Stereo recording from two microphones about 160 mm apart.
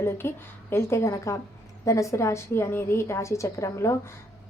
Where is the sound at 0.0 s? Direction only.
15° left (ahead or behind).